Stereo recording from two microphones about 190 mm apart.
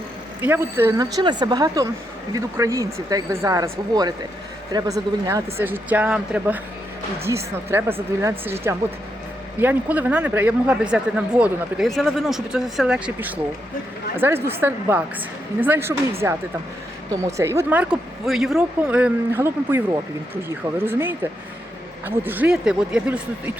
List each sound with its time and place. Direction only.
0.4 s a woman's voice: 10° right (ahead or behind)